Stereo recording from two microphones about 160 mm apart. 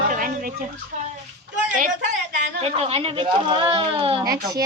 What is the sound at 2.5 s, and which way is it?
Speech, 40° right (ahead or behind).